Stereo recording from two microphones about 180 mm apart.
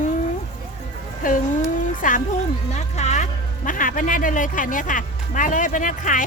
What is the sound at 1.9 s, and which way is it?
Speech, 45° left (ahead or behind).